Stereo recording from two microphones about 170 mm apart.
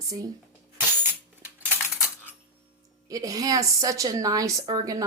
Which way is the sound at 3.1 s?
20° right (ahead or behind).